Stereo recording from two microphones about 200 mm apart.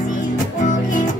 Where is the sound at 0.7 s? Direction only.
40° left (ahead or behind).